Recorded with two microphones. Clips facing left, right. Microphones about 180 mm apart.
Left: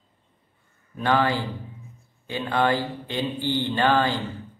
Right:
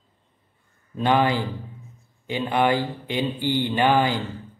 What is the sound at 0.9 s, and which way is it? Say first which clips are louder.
Speech: right 2 dB; 20° right (ahead or behind).